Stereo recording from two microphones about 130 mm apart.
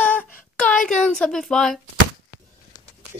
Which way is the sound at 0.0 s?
10° left (ahead or behind).